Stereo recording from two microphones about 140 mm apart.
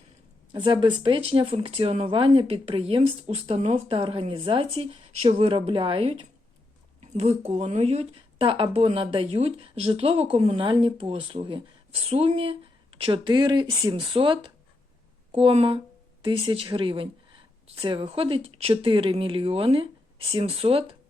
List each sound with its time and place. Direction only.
0.5 s speech: 35° right (ahead or behind)
7.0 s speech: 50° right (ahead or behind)